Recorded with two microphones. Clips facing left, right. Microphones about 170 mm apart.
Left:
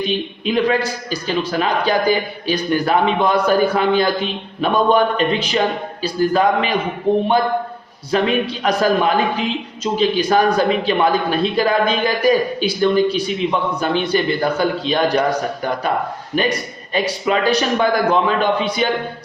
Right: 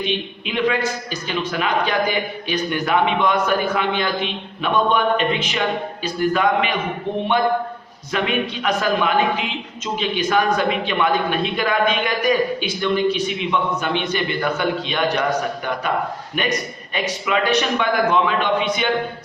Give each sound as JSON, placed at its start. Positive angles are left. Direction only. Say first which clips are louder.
{"t": 0.0, "sound": "a man's voice", "louder": "left 4 dB", "side_deg": 40}
{"t": 16.3, "sound": "a man's voice", "louder": "left 5 dB", "side_deg": 35}